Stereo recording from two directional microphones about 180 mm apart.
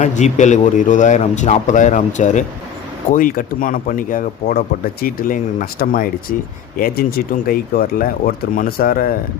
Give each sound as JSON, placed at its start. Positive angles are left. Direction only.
{"t": 0.0, "sound": "a man's voice", "side_deg": 40}